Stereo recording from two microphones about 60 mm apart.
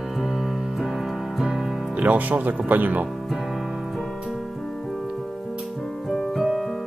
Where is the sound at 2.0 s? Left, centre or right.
Right.